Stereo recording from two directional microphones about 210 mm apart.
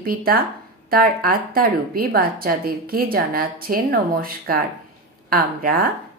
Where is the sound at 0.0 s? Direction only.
45° right (ahead or behind).